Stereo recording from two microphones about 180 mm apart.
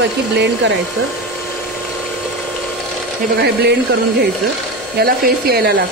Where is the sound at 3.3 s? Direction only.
65° right (ahead or behind).